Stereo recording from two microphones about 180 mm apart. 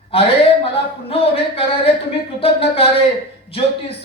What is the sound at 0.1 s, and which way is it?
Speech, 30° left (ahead or behind).